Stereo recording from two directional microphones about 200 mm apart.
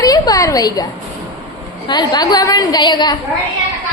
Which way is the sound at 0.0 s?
20° left (ahead or behind).